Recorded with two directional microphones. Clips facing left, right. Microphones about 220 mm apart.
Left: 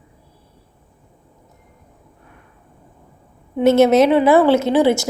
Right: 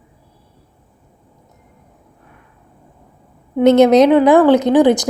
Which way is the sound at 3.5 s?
15° right (ahead or behind).